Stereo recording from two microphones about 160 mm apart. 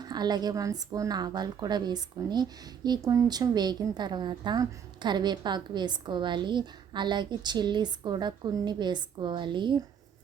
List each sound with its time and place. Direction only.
0.0 s a woman's voice: 25° right (ahead or behind)